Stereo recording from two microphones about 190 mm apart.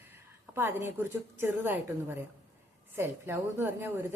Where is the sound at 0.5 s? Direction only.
10° right (ahead or behind).